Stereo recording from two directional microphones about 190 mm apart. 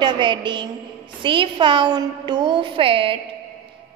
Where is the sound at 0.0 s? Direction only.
25° right (ahead or behind).